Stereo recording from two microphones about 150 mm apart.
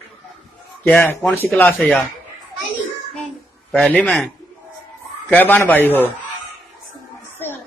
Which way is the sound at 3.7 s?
10° left (ahead or behind).